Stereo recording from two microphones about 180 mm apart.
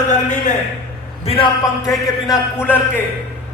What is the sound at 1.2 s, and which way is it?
Speech, 30° left (ahead or behind).